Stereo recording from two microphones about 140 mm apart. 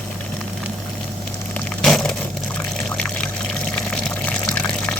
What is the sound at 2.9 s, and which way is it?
Pour, 10° left (ahead or behind).